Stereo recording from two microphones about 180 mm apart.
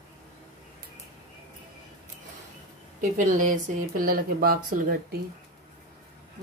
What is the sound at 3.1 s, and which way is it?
Speech, 45° right (ahead or behind).